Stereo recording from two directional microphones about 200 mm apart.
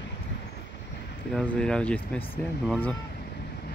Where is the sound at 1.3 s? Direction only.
5° left (ahead or behind).